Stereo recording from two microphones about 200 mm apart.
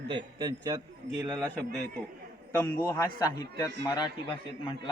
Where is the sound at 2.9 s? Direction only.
15° left (ahead or behind).